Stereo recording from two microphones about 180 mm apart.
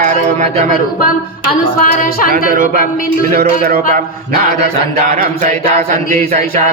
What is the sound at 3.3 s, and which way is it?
Speech, 45° right (ahead or behind).